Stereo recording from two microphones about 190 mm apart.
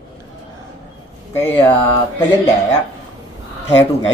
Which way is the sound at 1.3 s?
10° left (ahead or behind).